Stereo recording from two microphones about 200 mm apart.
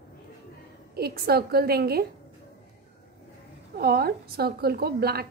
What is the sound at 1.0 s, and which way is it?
A woman's voice, 50° right (ahead or behind).